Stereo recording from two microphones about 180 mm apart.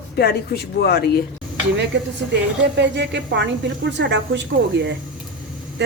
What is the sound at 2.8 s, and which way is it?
A woman's voice, 75° right (ahead or behind).